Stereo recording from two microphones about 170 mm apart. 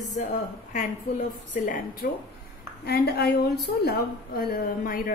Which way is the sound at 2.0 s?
65° left (ahead or behind).